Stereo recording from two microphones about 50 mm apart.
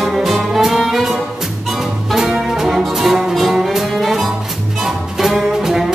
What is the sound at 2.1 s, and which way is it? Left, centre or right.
Brass instrument, centre.